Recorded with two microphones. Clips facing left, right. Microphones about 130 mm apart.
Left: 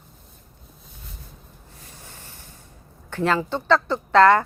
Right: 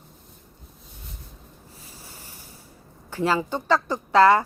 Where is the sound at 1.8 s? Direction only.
5° right (ahead or behind).